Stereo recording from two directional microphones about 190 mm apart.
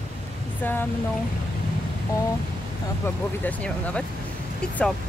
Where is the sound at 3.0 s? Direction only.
10° left (ahead or behind).